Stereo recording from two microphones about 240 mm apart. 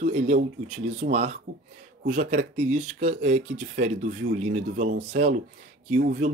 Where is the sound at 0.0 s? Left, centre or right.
Right.